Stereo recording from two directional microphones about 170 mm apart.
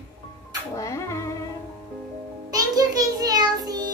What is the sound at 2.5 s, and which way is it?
Child singing, 20° right (ahead or behind).